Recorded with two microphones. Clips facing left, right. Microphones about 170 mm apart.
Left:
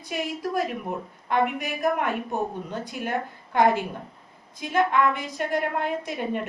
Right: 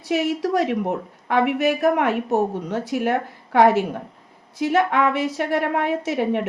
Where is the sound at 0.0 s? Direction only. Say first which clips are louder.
Right 8 dB; 75° right (ahead or behind).